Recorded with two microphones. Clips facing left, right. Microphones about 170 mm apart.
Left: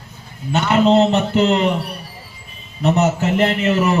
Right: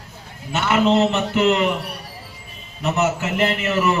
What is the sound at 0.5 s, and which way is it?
A man's voice, 35° left (ahead or behind).